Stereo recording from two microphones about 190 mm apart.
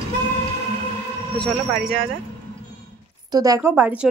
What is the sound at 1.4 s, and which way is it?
Speech, centre (ahead or behind).